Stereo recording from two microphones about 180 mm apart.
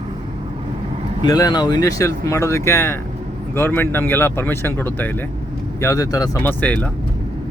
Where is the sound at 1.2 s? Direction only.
20° left (ahead or behind).